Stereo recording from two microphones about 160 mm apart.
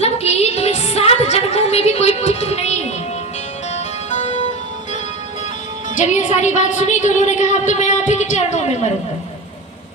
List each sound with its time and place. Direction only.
0.0 s music: 40° left (ahead or behind)
4.1 s music: 45° left (ahead or behind)
6.0 s a woman's voice: 50° left (ahead or behind)